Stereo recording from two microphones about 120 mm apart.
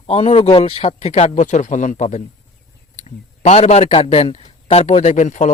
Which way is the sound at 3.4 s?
65° left (ahead or behind).